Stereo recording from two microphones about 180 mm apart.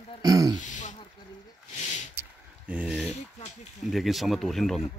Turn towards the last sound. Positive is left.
turn(degrees=0)  # may be behind; listen again after turning